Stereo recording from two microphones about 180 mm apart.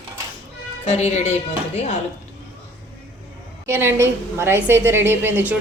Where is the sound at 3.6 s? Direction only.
15° right (ahead or behind).